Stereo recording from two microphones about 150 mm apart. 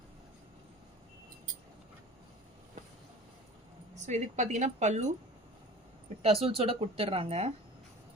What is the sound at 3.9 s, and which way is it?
A woman's voice, 50° right (ahead or behind).